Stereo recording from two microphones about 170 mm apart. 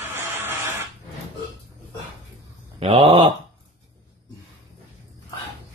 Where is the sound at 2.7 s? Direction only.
35° right (ahead or behind).